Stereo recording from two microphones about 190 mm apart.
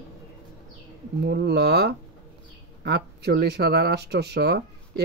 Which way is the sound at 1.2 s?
60° right (ahead or behind).